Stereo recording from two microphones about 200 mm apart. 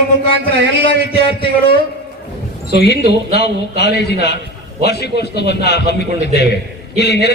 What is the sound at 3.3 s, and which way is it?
A man's voice, 55° left (ahead or behind).